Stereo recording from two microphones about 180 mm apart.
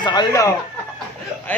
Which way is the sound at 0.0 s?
25° left (ahead or behind).